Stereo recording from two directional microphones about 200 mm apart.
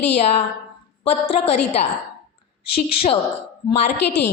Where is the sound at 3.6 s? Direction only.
30° left (ahead or behind).